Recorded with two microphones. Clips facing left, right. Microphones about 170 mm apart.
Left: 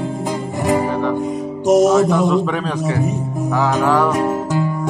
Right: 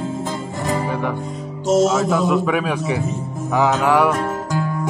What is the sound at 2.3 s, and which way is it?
A man's voice, 10° right (ahead or behind).